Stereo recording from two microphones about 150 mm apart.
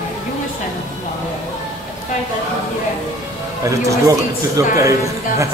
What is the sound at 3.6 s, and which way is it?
A man's voice, 20° right (ahead or behind).